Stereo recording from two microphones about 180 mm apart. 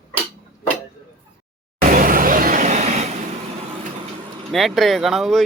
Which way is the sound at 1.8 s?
50° right (ahead or behind).